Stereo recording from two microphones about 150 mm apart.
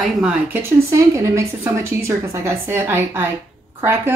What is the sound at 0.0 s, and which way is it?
A woman's voice, 5° right (ahead or behind).